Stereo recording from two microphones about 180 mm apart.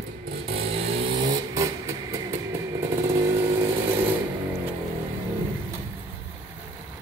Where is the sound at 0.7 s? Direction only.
30° right (ahead or behind); by 3.3 s 15° right (ahead or behind).